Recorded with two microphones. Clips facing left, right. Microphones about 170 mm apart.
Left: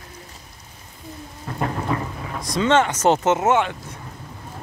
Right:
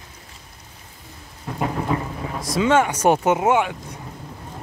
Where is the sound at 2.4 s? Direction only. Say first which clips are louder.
Even; 5° right (ahead or behind).